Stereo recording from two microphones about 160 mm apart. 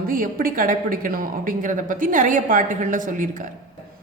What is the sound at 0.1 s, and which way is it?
A woman's voice, 60° right (ahead or behind).